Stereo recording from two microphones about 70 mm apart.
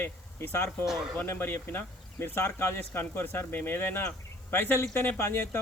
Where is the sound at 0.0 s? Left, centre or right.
Left.